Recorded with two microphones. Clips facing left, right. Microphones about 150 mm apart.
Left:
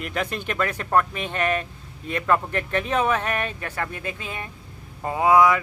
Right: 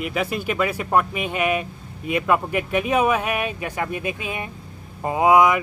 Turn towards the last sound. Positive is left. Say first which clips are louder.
# right 2 dB
turn(degrees=-15)  # may be behind; listen again after turning